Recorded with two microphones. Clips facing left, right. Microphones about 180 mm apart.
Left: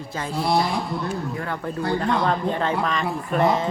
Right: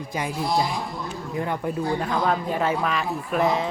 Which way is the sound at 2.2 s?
10° right (ahead or behind).